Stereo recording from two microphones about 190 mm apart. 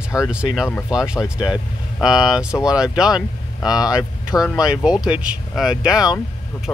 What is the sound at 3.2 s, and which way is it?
Speech, 20° left (ahead or behind).